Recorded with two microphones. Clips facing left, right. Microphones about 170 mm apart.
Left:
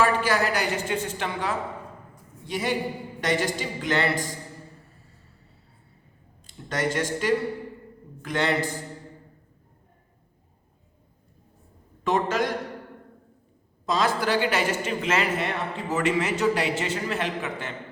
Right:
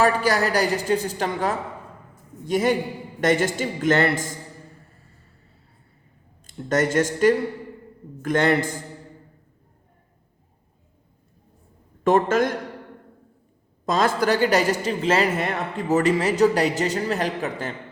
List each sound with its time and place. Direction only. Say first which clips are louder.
0.0 s a man's voice: right 3 dB; 40° right (ahead or behind)
6.5 s a man's voice: right 6 dB; 45° right (ahead or behind)
12.0 s a man's voice: right 6 dB; 50° right (ahead or behind)
13.8 s a man's voice: right 4 dB; 50° right (ahead or behind)